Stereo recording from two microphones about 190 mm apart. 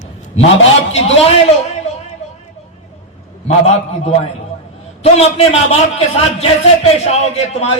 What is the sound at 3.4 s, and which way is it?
A man's voice, 35° left (ahead or behind).